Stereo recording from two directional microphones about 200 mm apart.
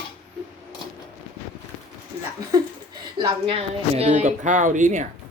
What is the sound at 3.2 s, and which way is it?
A woman's voice, 25° right (ahead or behind).